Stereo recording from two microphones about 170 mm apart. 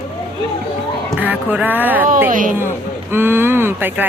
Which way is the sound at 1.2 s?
10° right (ahead or behind).